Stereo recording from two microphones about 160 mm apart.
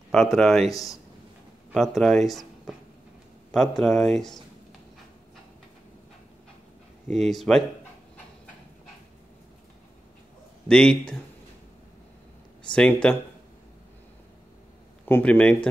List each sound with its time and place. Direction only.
0.1 s speech: 5° left (ahead or behind)
0.7 s speech: 20° left (ahead or behind)
1.7 s speech: centre (ahead or behind)
7.1 s speech: centre (ahead or behind)
10.7 s speech: 5° left (ahead or behind)
12.7 s speech: 5° left (ahead or behind)
15.0 s a man's voice: 10° left (ahead or behind)